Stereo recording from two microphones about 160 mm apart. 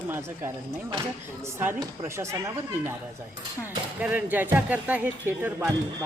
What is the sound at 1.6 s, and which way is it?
Speech, 15° right (ahead or behind).